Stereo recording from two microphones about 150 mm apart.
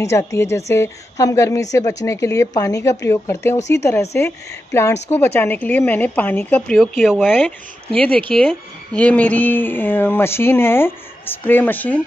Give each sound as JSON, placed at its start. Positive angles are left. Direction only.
{"t": 0.0, "sound": "a woman's voice", "side_deg": 20}
{"t": 6.8, "sound": "speech", "side_deg": 0}